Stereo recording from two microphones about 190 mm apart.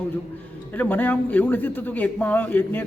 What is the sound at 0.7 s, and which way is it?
A man's voice, 10° left (ahead or behind).